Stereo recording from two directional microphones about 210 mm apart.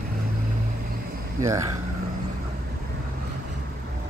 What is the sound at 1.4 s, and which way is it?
Speech, 15° right (ahead or behind).